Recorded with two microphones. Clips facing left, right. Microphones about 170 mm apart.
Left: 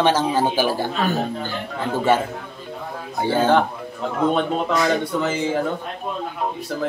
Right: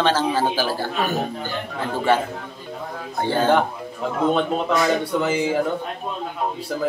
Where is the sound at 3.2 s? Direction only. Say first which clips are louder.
Left 1 dB; 10° left (ahead or behind).